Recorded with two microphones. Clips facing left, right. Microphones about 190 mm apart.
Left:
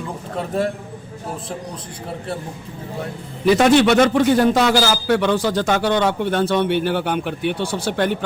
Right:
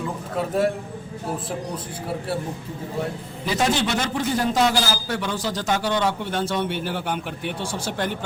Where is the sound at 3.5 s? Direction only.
70° left (ahead or behind).